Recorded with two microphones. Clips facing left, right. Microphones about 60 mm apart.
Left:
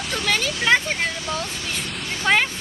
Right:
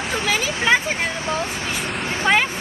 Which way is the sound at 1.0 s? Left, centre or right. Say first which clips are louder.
Right 3 dB; right.